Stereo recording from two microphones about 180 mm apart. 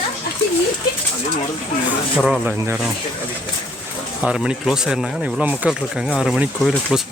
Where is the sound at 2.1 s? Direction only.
Centre (ahead or behind).